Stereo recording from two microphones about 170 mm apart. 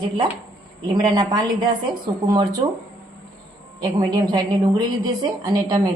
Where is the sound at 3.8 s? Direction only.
25° right (ahead or behind).